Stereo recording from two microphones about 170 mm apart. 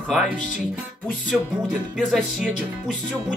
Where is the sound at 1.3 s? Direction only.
Centre (ahead or behind).